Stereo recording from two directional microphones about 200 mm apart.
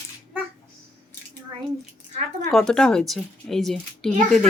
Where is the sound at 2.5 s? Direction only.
Centre (ahead or behind).